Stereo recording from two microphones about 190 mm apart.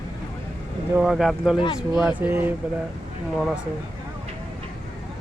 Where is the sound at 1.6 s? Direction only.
25° left (ahead or behind).